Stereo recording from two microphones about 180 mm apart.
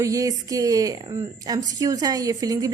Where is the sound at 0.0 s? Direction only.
20° right (ahead or behind).